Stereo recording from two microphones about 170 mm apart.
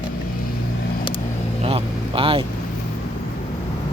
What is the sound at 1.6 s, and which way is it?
Vehicle, 35° right (ahead or behind).